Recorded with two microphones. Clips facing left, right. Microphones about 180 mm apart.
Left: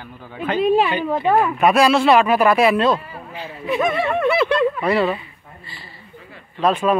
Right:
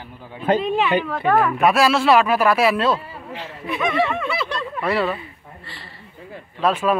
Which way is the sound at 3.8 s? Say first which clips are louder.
Left 2 dB; 50° left (ahead or behind).